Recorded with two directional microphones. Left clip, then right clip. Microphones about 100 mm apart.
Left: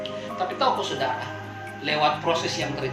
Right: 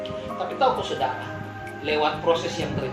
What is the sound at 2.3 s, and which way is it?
Speech, 30° right (ahead or behind).